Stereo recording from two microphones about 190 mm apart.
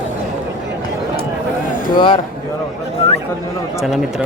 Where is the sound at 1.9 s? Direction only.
25° left (ahead or behind).